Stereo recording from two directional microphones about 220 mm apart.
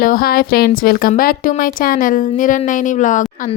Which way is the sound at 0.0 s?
40° left (ahead or behind).